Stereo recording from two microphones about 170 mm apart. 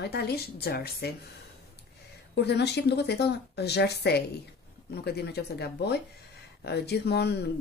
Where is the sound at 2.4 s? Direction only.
85° left.